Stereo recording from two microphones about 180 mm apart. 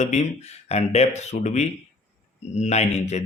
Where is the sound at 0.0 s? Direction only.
40° left (ahead or behind).